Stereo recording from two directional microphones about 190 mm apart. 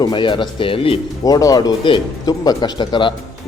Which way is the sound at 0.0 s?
25° left (ahead or behind).